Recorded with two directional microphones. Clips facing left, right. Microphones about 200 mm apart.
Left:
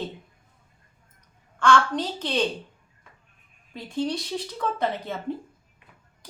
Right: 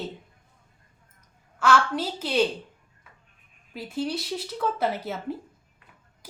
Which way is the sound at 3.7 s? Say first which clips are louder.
Left 1 dB; 5° right (ahead or behind).